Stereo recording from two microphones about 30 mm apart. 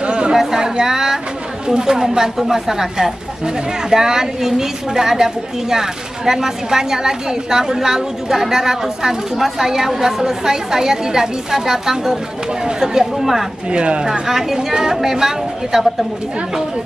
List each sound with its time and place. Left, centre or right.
0.0 s a sound: right
0.6 s a sound: centre
1.7 s a woman's voice: right
13.0 s a woman's voice: centre
13.7 s speech: right
14.2 s a woman's voice: centre